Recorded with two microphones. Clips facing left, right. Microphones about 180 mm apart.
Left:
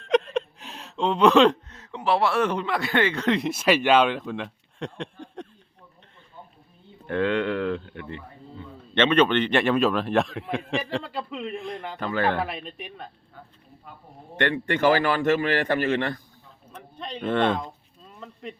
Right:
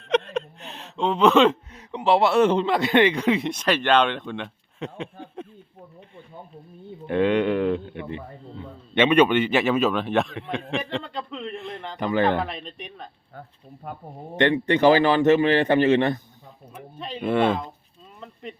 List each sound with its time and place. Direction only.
0.0 s a sound: centre (ahead or behind)
1.7 s a man's voice: 15° right (ahead or behind)
3.5 s a man's voice: 10° left (ahead or behind)
7.1 s a man's voice: 15° right (ahead or behind); by 11.9 s 5° left (ahead or behind)
11.9 s speech: 15° right (ahead or behind)
12.4 s a man's voice: 5° left (ahead or behind)
13.8 s speech: 55° right (ahead or behind)
14.3 s a man's voice: 20° right (ahead or behind)
16.7 s speech: 5° right (ahead or behind)